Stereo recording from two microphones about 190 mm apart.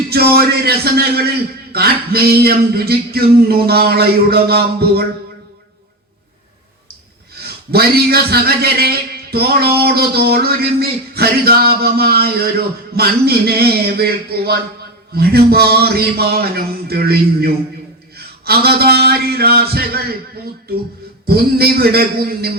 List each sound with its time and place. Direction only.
0.1 s a man's voice: 55° right (ahead or behind)
7.3 s a man's voice: 55° right (ahead or behind)
21.2 s a man's voice: 55° right (ahead or behind)